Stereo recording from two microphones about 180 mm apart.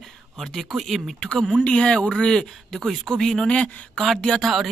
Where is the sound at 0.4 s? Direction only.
Centre (ahead or behind).